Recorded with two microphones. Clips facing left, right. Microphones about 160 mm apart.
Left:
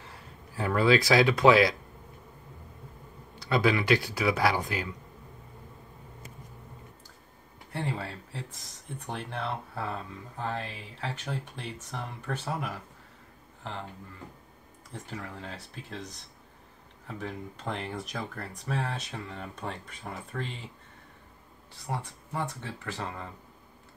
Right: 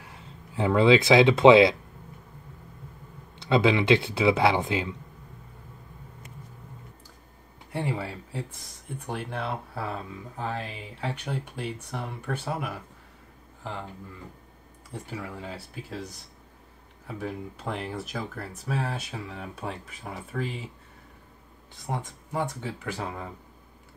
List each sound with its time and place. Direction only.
0.0 s speech: 20° right (ahead or behind)
3.3 s speech: 20° right (ahead or behind)
7.7 s speech: 15° right (ahead or behind)
14.9 s speech: 10° right (ahead or behind)
17.1 s speech: 5° right (ahead or behind)
21.8 s speech: 20° right (ahead or behind)